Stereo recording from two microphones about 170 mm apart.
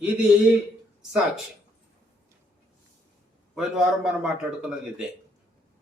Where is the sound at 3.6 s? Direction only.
5° right (ahead or behind).